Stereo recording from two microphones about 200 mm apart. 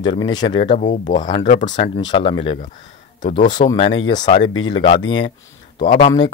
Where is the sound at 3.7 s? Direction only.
30° left (ahead or behind).